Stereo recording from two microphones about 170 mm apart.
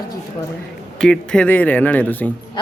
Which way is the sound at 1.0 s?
5° left (ahead or behind).